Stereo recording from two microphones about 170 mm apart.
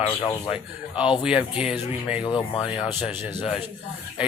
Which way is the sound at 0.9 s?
30° left (ahead or behind).